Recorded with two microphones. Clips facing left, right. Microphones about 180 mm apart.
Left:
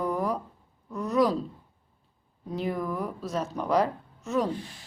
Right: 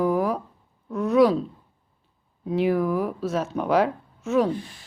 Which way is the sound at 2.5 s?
75° right (ahead or behind).